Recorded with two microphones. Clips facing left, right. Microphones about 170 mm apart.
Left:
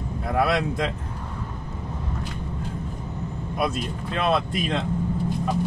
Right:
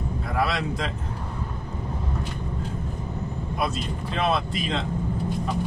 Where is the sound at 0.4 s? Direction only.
55° left (ahead or behind).